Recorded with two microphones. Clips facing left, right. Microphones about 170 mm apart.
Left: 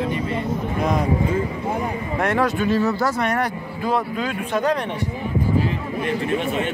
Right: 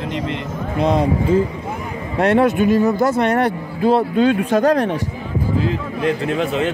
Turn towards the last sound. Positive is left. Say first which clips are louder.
# right 3 dB
turn(degrees=-90)